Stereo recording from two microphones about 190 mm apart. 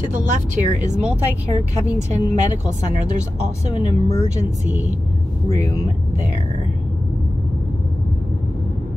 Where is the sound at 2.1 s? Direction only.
40° right (ahead or behind).